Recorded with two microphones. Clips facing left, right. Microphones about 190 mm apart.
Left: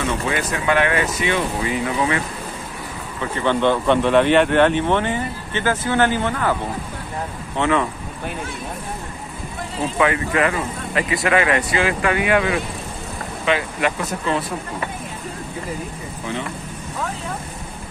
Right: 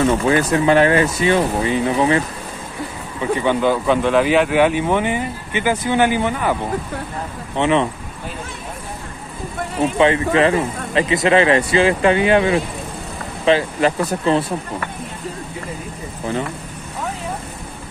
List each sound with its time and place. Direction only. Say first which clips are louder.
0.0 s speech: right 7 dB; 35° right (ahead or behind)
3.2 s speech: right 2 dB; 10° right (ahead or behind)
7.5 s speech: right 3 dB; 20° right (ahead or behind)
9.9 s speech: right 4 dB; 25° right (ahead or behind)